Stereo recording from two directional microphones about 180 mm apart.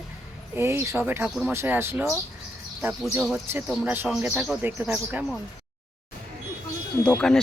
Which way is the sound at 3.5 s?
10° right (ahead or behind).